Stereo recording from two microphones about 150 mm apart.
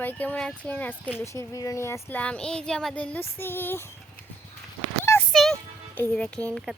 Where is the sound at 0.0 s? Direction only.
10° left (ahead or behind).